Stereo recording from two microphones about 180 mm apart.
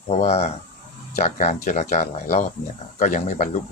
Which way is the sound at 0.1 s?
35° left (ahead or behind).